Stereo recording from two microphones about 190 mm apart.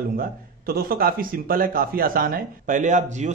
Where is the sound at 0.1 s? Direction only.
50° right (ahead or behind).